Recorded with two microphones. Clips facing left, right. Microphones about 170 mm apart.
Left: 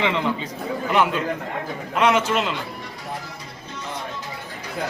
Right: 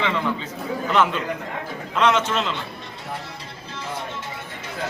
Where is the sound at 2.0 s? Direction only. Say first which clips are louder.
Left 1 dB; 10° left (ahead or behind).